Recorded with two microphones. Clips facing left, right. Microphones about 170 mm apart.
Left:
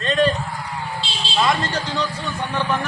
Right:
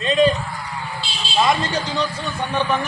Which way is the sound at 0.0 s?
10° right (ahead or behind).